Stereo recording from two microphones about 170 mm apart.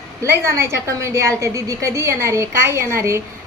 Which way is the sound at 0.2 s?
15° right (ahead or behind).